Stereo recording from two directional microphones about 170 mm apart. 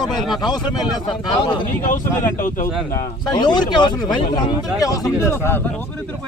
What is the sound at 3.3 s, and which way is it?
Speech, 25° left (ahead or behind).